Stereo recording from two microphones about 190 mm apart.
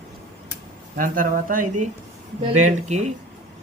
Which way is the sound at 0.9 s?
45° right (ahead or behind).